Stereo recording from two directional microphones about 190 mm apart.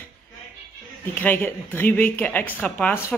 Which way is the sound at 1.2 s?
10° left (ahead or behind).